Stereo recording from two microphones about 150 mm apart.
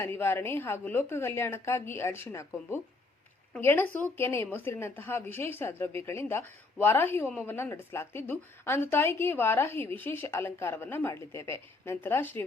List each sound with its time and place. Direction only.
0.0 s a woman's voice: 15° left (ahead or behind)
3.6 s a woman's voice: 15° left (ahead or behind)